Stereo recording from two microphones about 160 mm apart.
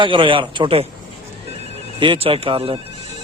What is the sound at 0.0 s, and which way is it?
Speech, 30° right (ahead or behind).